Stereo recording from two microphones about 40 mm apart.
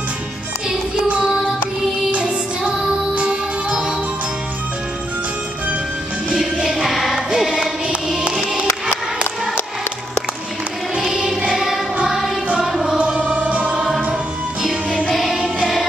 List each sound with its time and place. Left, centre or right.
2.1 s music: right
6.7 s music: centre
7.2 s music: centre
11.0 s music: centre
12.9 s music: right
14.6 s music: centre